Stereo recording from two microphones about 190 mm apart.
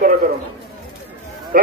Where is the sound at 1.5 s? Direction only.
50° right (ahead or behind).